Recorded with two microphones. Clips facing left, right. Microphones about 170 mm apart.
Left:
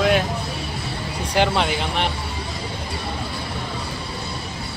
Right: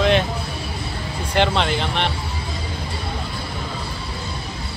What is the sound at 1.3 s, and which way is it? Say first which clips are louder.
Speech: right 1 dB; 10° left (ahead or behind).